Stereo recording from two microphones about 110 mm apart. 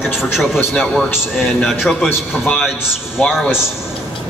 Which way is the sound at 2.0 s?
15° left (ahead or behind).